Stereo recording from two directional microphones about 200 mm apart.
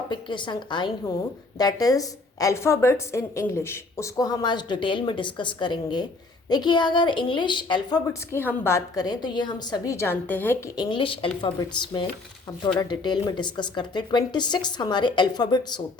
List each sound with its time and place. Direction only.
0.1 s a woman's voice: 25° left (ahead or behind)
10.8 s a woman's voice: 25° left (ahead or behind)